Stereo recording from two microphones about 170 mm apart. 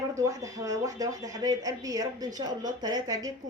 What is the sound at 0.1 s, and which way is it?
Speech, 20° right (ahead or behind).